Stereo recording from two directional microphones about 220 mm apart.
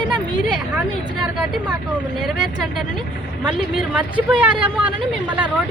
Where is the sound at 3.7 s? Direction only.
5° right (ahead or behind).